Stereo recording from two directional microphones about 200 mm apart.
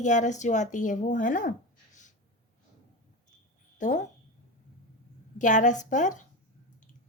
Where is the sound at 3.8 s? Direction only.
40° left (ahead or behind).